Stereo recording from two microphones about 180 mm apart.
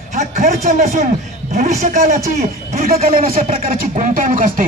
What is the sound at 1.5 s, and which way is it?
Speech, 40° right (ahead or behind).